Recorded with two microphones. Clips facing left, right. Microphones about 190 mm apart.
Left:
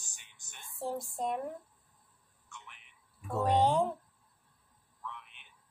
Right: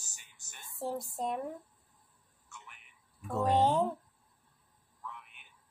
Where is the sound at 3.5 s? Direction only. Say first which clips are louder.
Even; 5° right (ahead or behind).